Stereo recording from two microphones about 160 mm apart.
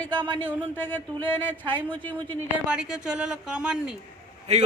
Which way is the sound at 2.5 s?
5° right (ahead or behind).